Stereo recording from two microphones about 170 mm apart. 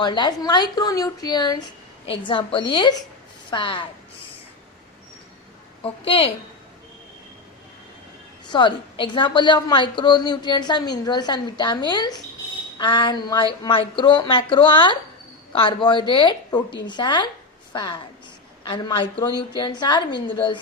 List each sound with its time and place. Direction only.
0.0 s a woman's voice: 25° left (ahead or behind)
5.8 s a woman's voice: 35° left (ahead or behind)
8.4 s a woman's voice: 25° left (ahead or behind)